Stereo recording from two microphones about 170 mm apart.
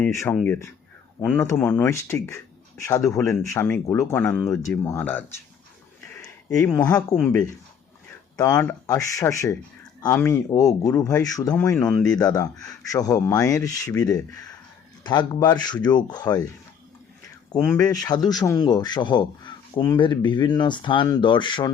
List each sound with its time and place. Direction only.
0.1 s speech: 15° left (ahead or behind)
3.5 s speech: 15° left (ahead or behind)
4.3 s speech: 5° left (ahead or behind)
4.6 s speech: 15° left (ahead or behind)
6.7 s speech: 5° left (ahead or behind)
8.5 s speech: 15° left (ahead or behind)
12.2 s speech: 20° left (ahead or behind)
17.7 s speech: 20° left (ahead or behind)